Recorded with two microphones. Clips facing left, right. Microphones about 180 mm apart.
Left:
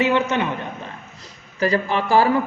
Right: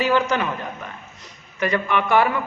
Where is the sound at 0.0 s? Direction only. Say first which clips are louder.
Left 1 dB; 25° left (ahead or behind).